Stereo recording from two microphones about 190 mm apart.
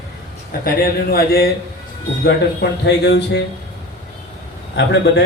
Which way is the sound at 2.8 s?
60° left (ahead or behind).